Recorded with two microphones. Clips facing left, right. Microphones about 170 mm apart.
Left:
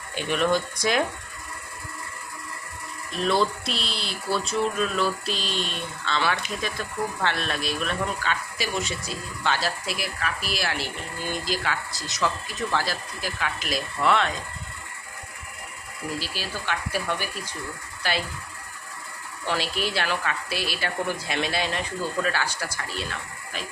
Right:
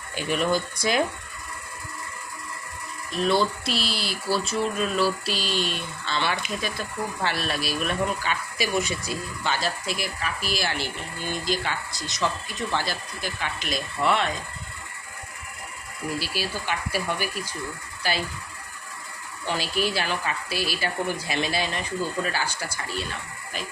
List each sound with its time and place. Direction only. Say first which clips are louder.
0.2 s speech: left 1 dB; centre (ahead or behind)
3.2 s speech: right 1 dB; centre (ahead or behind)
16.1 s speech: right 3 dB; 10° right (ahead or behind)
19.5 s speech: right 1 dB; centre (ahead or behind)